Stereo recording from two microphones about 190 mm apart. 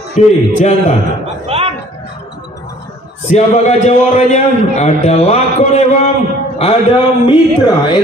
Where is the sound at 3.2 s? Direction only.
35° left (ahead or behind).